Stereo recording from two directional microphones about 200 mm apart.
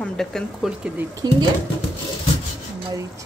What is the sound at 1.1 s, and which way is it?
Speech, 20° right (ahead or behind).